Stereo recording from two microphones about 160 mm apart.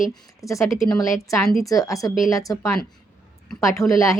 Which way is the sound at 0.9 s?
20° left (ahead or behind).